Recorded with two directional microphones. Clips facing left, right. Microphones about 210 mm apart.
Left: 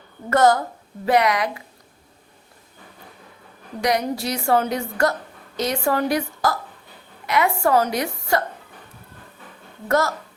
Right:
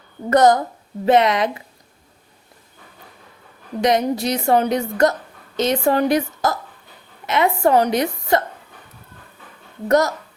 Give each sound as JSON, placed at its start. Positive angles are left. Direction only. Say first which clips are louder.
{"t": 0.3, "sound": "a woman's voice", "louder": "right 3 dB", "side_deg": -20}
{"t": 3.8, "sound": "a woman's voice", "louder": "right 4 dB", "side_deg": -20}
{"t": 9.9, "sound": "a woman's voice", "louder": "right 4 dB", "side_deg": -20}